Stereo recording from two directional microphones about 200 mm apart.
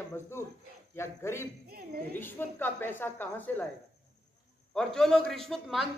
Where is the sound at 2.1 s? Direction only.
10° left (ahead or behind).